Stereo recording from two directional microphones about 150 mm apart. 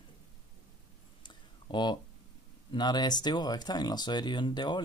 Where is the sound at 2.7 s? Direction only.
30° left (ahead or behind).